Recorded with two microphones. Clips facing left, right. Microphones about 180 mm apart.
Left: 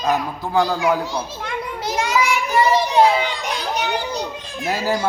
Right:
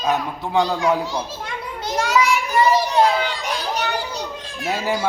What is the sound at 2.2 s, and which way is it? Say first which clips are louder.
Children playing: even; 10° right (ahead or behind).